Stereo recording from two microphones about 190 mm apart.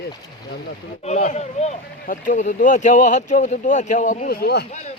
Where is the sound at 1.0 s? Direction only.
35° left (ahead or behind); by 4.6 s 55° left (ahead or behind).